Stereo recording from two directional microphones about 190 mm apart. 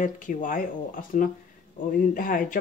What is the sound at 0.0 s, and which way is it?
Speech, 45° left (ahead or behind).